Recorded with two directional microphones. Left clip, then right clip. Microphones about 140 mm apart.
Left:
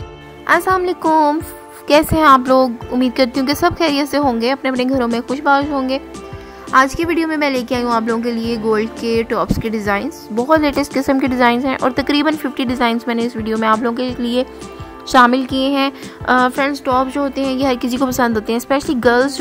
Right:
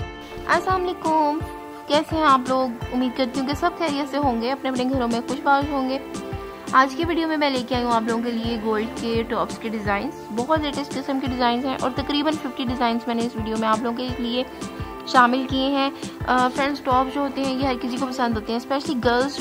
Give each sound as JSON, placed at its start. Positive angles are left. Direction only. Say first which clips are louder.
{"t": 0.5, "sound": "a woman's voice", "louder": "left 7 dB", "side_deg": 45}
{"t": 16.3, "sound": "a woman's voice", "louder": "left 5 dB", "side_deg": 45}